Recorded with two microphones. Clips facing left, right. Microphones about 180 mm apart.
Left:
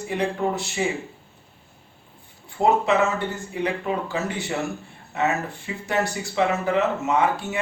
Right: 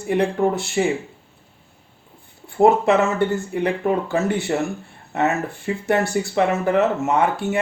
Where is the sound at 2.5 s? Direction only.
50° right (ahead or behind).